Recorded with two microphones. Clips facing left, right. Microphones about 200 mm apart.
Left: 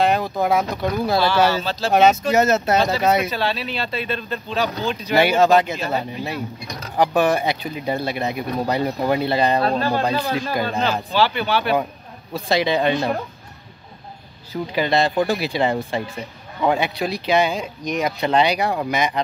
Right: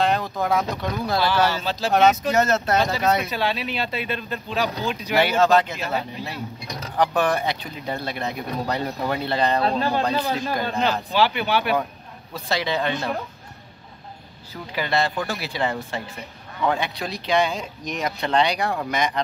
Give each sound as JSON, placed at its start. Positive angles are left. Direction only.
{"t": 0.0, "sound": "speech", "side_deg": 15}
{"t": 1.6, "sound": "speech", "side_deg": -15}
{"t": 1.9, "sound": "speech", "side_deg": 15}
{"t": 3.3, "sound": "speech", "side_deg": -15}
{"t": 5.1, "sound": "speech", "side_deg": 15}
{"t": 9.8, "sound": "speech", "side_deg": -15}
{"t": 10.5, "sound": "speech", "side_deg": 10}
{"t": 11.1, "sound": "speech", "side_deg": -15}
{"t": 12.4, "sound": "speech", "side_deg": 15}
{"t": 14.5, "sound": "speech", "side_deg": 20}